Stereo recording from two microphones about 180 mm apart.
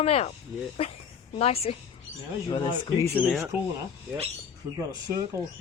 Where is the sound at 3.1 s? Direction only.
Centre (ahead or behind).